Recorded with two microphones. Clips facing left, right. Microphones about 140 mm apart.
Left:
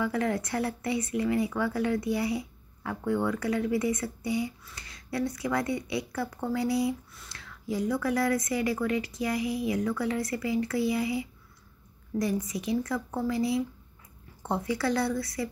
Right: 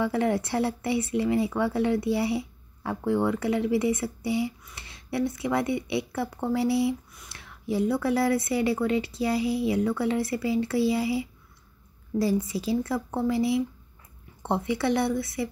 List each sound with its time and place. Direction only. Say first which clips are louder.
0.0 s speech: right 3 dB; 25° right (ahead or behind)